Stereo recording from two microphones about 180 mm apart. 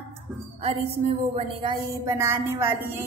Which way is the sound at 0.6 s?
35° right (ahead or behind).